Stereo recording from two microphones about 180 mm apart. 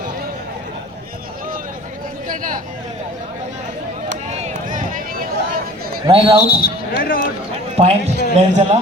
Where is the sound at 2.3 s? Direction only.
50° right (ahead or behind).